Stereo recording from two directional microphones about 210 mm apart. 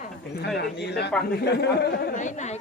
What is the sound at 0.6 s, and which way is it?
Speech, 50° left (ahead or behind).